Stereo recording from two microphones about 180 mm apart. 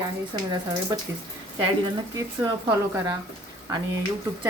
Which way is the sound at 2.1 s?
15° right (ahead or behind).